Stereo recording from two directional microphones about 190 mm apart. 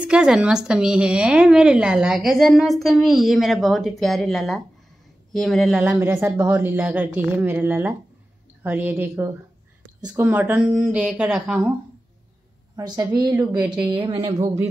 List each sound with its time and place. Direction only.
0.0 s a woman's voice: 5° right (ahead or behind)
12.7 s a woman's voice: 20° right (ahead or behind)